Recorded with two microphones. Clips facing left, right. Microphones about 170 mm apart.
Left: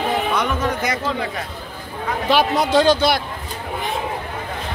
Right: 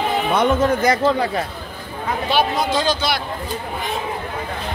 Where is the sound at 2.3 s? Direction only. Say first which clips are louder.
Left 2 dB; 70° left (ahead or behind).